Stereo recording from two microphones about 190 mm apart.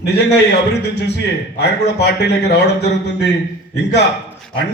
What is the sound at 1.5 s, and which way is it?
A man's voice, 60° left (ahead or behind).